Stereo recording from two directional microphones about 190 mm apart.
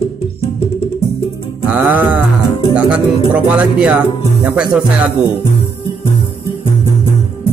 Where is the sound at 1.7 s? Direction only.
10° right (ahead or behind).